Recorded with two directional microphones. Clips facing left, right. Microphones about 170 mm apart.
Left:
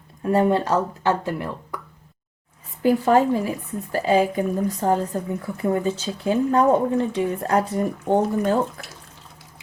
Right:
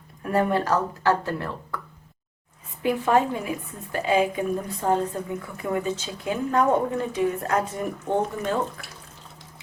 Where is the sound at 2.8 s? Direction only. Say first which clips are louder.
Left 4 dB; 35° left (ahead or behind).